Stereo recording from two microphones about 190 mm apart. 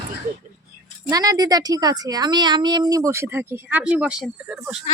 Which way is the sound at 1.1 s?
20° right (ahead or behind).